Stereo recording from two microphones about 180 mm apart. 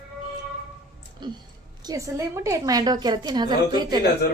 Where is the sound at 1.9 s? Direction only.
15° right (ahead or behind).